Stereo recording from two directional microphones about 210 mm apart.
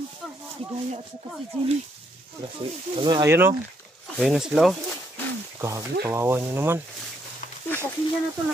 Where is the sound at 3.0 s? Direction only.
20° right (ahead or behind); by 4.7 s centre (ahead or behind).